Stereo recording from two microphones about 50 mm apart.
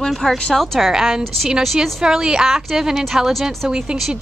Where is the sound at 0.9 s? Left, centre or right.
Centre.